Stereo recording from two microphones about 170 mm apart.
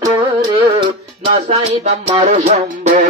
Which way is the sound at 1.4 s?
40° right (ahead or behind).